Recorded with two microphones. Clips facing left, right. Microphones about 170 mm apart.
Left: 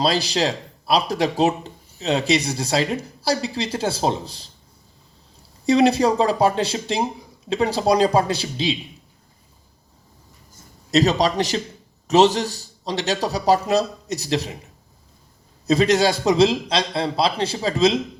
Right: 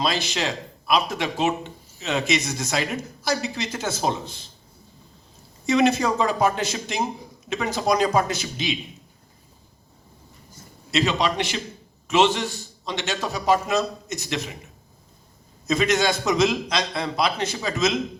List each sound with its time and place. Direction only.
0.0 s speech: 35° left (ahead or behind)
5.6 s speech: 35° left (ahead or behind)
10.9 s speech: 40° left (ahead or behind)
15.6 s speech: 35° left (ahead or behind)